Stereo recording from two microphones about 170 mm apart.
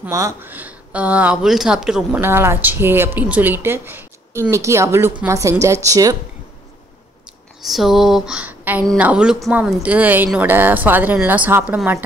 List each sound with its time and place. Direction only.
0.1 s speech: 20° right (ahead or behind); by 2.2 s 5° right (ahead or behind)
2.2 s speech: 15° right (ahead or behind)
7.6 s a sound: centre (ahead or behind)
8.9 s speech: 5° right (ahead or behind)